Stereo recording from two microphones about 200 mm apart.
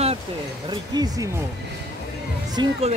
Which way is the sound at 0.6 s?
20° right (ahead or behind).